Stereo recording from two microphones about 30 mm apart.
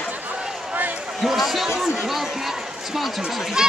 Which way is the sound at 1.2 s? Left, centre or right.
Centre.